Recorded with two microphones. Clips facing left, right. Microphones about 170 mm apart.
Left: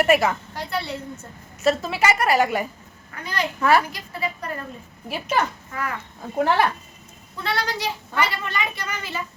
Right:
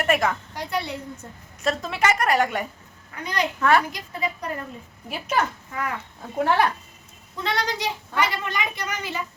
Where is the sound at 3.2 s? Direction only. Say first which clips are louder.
Right 1 dB; 20° right (ahead or behind).